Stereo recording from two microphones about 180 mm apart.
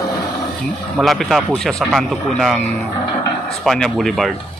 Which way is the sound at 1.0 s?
Centre (ahead or behind).